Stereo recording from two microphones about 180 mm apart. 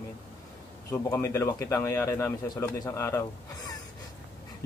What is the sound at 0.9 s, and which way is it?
Speech, 15° left (ahead or behind).